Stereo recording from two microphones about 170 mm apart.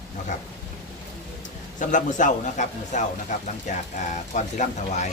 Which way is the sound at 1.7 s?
50° left (ahead or behind).